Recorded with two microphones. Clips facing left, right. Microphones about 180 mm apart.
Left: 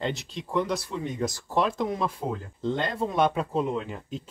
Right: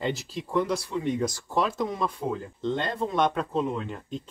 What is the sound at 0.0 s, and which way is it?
Speech, 5° right (ahead or behind).